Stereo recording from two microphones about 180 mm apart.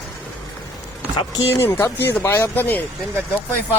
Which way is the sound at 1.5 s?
10° left (ahead or behind).